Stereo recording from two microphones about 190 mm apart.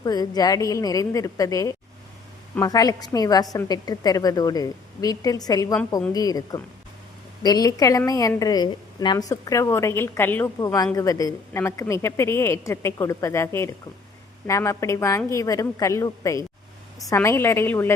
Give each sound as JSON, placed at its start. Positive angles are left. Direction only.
{"t": 0.0, "sound": "a woman's voice", "side_deg": 20}